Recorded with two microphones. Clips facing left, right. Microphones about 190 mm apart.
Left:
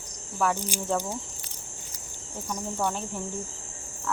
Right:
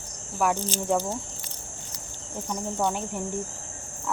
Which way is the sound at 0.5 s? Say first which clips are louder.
Right 3 dB; 10° left (ahead or behind).